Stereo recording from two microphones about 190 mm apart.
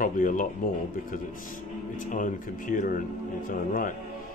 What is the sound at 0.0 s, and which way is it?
A man's voice, 45° left (ahead or behind).